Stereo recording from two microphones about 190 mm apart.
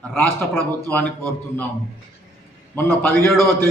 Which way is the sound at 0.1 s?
10° left (ahead or behind).